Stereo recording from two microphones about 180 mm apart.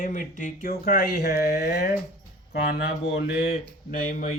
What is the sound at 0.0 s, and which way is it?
Speech, 45° left (ahead or behind).